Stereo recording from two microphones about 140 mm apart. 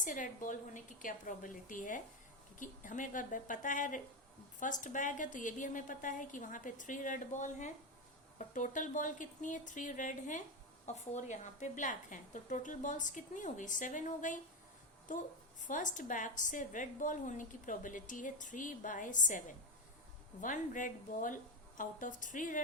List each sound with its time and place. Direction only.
0.0 s a woman's voice: 65° left (ahead or behind)